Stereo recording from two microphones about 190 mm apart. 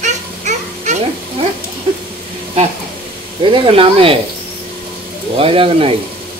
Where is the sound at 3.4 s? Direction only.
25° right (ahead or behind).